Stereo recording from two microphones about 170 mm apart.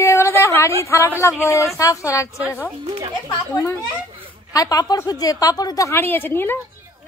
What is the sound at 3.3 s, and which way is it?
A woman's voice, 20° left (ahead or behind).